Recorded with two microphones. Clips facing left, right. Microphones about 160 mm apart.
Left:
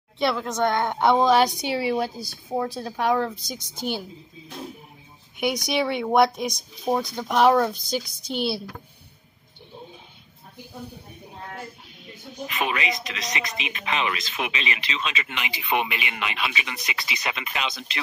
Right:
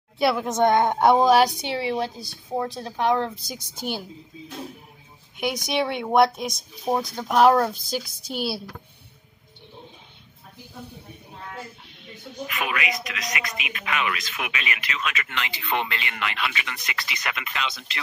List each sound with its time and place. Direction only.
0.2 s a woman's voice: 5° right (ahead or behind)
0.5 s a woman's voice: 20° right (ahead or behind)
1.7 s speech: 5° left (ahead or behind)
5.4 s speech: centre (ahead or behind)
12.4 s speech: 25° left (ahead or behind)